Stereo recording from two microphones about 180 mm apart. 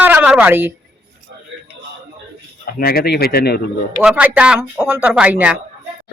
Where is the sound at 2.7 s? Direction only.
55° left (ahead or behind).